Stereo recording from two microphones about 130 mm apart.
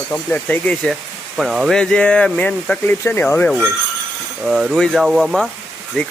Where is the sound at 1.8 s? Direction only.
10° left (ahead or behind).